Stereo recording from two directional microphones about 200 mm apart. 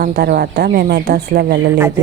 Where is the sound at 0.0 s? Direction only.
50° right (ahead or behind).